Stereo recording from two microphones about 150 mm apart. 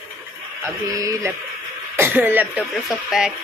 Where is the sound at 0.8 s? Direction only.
20° right (ahead or behind).